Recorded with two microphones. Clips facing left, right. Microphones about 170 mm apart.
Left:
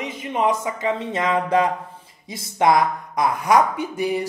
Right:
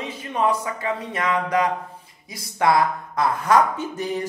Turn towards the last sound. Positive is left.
turn(degrees=10)  # may be behind; listen again after turning